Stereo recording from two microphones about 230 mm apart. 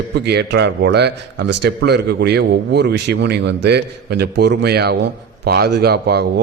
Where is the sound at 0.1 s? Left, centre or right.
Right.